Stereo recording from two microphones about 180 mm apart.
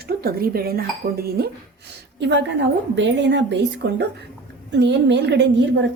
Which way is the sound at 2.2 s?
85° right.